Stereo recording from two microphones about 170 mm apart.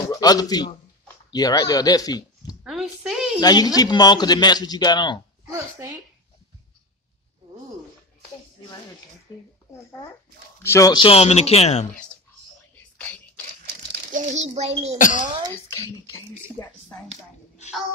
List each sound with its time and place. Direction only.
0.1 s a man's voice: 20° left (ahead or behind)
2.6 s a sound: centre (ahead or behind)
3.3 s a man's voice: 25° left (ahead or behind)
5.5 s speech: 15° right (ahead or behind)
9.3 s speech: 25° left (ahead or behind)
10.6 s speech: 20° left (ahead or behind); by 11.9 s 40° left (ahead or behind)
14.1 s a child's voice: 45° right (ahead or behind)
15.0 s speech: 50° left (ahead or behind)
15.5 s speech: 15° left (ahead or behind)